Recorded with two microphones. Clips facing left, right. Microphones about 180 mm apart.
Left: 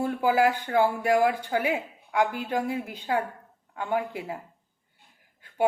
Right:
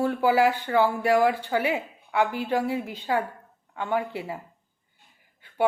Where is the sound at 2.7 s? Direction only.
10° left (ahead or behind).